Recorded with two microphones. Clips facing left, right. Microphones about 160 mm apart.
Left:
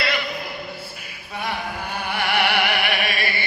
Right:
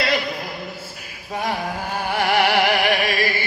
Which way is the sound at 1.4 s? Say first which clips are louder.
Right 3 dB; 40° right (ahead or behind).